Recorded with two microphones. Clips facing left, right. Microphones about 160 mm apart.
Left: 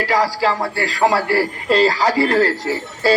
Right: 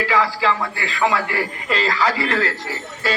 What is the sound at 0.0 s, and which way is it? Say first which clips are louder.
A man's voice: left 2 dB; 40° left (ahead or behind).